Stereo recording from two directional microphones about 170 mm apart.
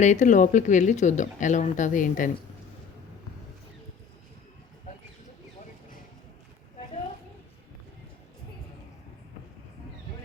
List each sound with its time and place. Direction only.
0.0 s speech: 45° left (ahead or behind)